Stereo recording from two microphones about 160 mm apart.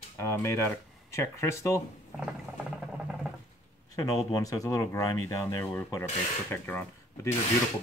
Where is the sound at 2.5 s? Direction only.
15° right (ahead or behind).